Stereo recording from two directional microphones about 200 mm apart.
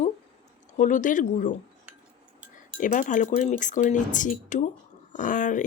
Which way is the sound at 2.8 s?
40° left (ahead or behind).